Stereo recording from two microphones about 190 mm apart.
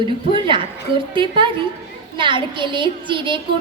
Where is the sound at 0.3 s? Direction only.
25° right (ahead or behind).